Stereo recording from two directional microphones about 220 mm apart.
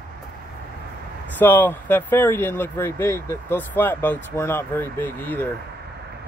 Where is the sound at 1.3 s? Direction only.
10° left (ahead or behind).